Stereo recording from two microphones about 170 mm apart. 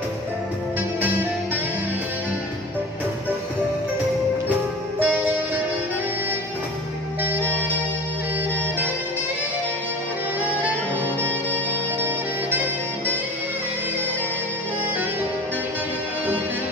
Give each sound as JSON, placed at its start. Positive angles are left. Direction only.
{"t": 4.9, "sound": "music", "side_deg": -10}
{"t": 12.0, "sound": "saxophone", "side_deg": -10}